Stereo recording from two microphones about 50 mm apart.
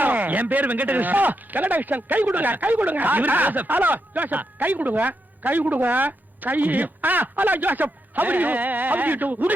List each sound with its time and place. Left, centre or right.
0.0 s speech: right